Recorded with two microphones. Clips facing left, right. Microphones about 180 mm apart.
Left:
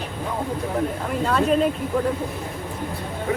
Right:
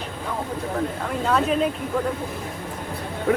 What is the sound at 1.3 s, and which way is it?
Speech, centre (ahead or behind).